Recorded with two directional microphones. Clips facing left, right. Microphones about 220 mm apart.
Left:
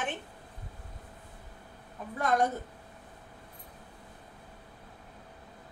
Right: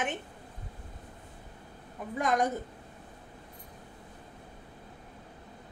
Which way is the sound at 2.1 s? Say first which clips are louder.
Even; 15° right (ahead or behind).